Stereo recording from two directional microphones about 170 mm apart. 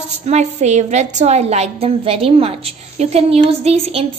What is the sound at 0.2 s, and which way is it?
A woman's voice, 45° right (ahead or behind).